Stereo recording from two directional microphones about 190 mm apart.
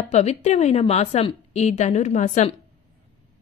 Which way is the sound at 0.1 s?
35° left (ahead or behind).